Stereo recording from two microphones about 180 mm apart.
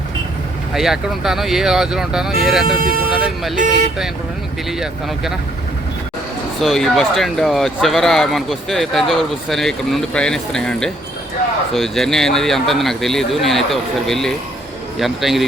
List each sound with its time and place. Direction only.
0.7 s speech: centre (ahead or behind)
2.6 s speech: 55° right (ahead or behind)
4.8 s speech: centre (ahead or behind)
6.6 s speech: centre (ahead or behind)